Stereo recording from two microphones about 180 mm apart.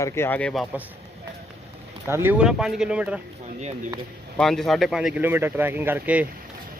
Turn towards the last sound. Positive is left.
turn(degrees=-10)  # may be behind; listen again after turning